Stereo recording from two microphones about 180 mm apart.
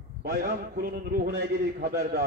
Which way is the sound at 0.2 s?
55° right (ahead or behind).